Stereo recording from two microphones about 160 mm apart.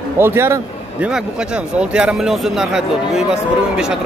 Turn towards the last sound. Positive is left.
turn(degrees=-5)  # may be behind; listen again after turning